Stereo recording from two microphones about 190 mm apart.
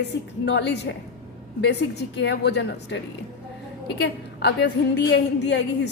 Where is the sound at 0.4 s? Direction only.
70° left (ahead or behind).